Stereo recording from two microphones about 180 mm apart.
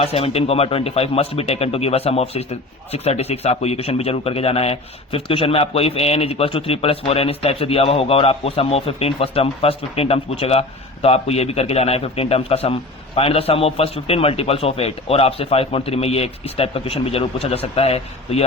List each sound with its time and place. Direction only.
0.0 s a man's voice: 35° left (ahead or behind)